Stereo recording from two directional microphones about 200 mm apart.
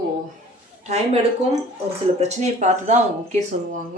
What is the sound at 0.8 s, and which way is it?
Speech, 35° right (ahead or behind).